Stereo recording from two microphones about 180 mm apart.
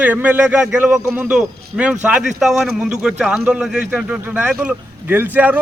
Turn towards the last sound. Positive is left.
turn(degrees=-10)  # may be behind; listen again after turning